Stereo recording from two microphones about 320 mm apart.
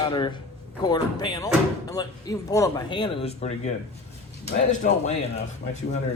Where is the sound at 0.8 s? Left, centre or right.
Centre.